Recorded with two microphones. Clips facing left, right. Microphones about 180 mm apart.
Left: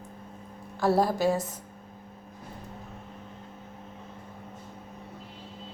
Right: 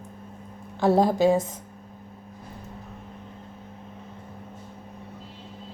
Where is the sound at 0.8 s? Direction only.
20° right (ahead or behind).